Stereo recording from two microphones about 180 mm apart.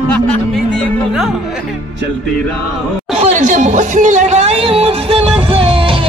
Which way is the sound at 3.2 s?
40° right (ahead or behind).